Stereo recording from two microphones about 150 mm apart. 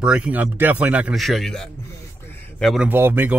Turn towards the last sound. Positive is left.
turn(degrees=-15)  # may be behind; listen again after turning